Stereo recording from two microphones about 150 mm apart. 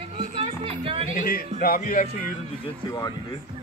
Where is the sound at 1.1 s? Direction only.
60° left (ahead or behind).